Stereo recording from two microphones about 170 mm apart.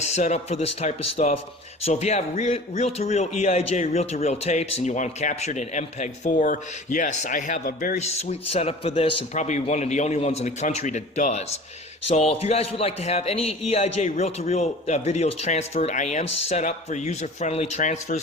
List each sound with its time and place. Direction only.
0.0 s a man's voice: 40° left (ahead or behind)
7.9 s a man's voice: 40° left (ahead or behind)